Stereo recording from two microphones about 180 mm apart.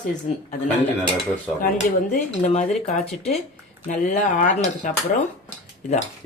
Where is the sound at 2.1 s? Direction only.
40° left (ahead or behind).